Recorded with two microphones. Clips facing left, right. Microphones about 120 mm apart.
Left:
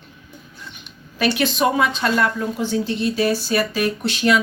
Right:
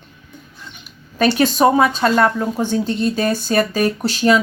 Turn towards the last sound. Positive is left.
turn(degrees=-35)  # may be behind; listen again after turning